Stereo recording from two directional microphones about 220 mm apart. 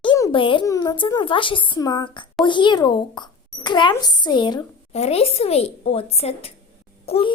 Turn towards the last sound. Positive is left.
turn(degrees=25)  # may be behind; listen again after turning